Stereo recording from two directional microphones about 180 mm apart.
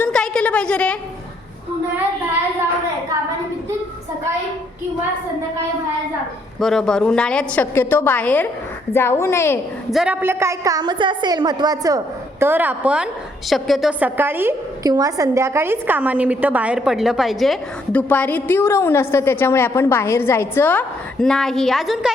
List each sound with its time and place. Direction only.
0.0 s a sound: 5° left (ahead or behind)
6.6 s a woman's voice: centre (ahead or behind)
9.9 s a woman's voice: 5° right (ahead or behind)